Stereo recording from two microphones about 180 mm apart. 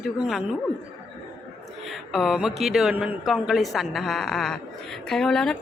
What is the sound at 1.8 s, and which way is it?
A man's voice, centre (ahead or behind).